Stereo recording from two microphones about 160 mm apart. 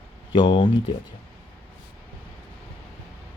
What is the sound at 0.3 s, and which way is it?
Speech, 30° left (ahead or behind).